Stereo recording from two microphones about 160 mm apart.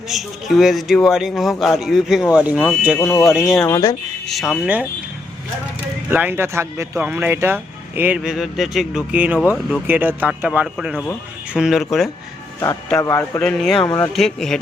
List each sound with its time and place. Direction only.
0.1 s speech: centre (ahead or behind)
3.0 s speech: 20° left (ahead or behind)
3.2 s speech: centre (ahead or behind)
3.7 s speech: 20° left (ahead or behind)
4.3 s speech: centre (ahead or behind)
6.1 s speech: 10° right (ahead or behind)
13.0 s speech: 20° left (ahead or behind)
13.4 s speech: 5° left (ahead or behind)
13.8 s speech: 20° left (ahead or behind)
14.1 s speech: centre (ahead or behind)